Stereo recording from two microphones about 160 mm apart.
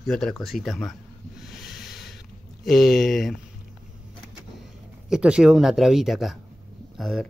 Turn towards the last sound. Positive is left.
turn(degrees=0)  # may be behind; listen again after turning